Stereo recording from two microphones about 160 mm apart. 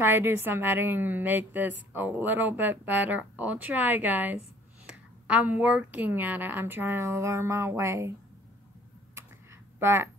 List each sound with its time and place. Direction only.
0.0 s a woman's voice: 15° right (ahead or behind)
9.8 s speech: 15° right (ahead or behind)